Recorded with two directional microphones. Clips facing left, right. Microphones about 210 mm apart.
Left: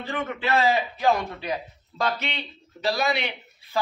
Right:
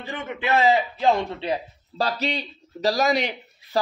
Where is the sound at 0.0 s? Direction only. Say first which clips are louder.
Left 1 dB; 20° right (ahead or behind).